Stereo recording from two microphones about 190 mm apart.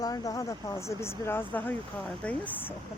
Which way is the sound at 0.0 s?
20° left (ahead or behind).